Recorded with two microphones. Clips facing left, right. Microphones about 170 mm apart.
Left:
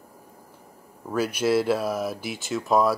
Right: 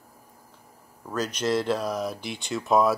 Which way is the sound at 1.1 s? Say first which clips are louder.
Left 3 dB; 10° left (ahead or behind).